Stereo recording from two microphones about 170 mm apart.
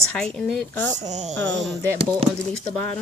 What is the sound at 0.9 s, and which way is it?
Speech, 45° right (ahead or behind).